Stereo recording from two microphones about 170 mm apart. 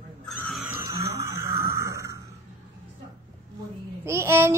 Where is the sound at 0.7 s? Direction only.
15° right (ahead or behind).